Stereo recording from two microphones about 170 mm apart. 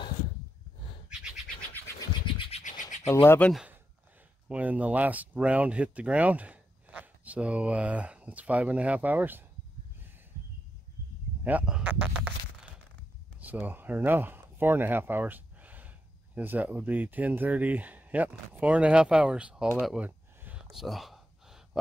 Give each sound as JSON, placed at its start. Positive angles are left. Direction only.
{"t": 2.8, "sound": "scratch", "side_deg": 45}
{"t": 3.3, "sound": "speech", "side_deg": 5}
{"t": 4.5, "sound": "speech", "side_deg": -10}
{"t": 11.4, "sound": "a sound", "side_deg": -5}
{"t": 13.4, "sound": "speech", "side_deg": -10}
{"t": 20.8, "sound": "gasp", "side_deg": 0}